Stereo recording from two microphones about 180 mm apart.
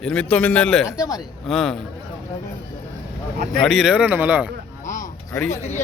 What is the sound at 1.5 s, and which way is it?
Speech, centre (ahead or behind).